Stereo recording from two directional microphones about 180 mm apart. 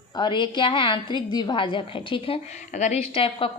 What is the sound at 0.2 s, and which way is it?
A woman's voice, 25° left (ahead or behind).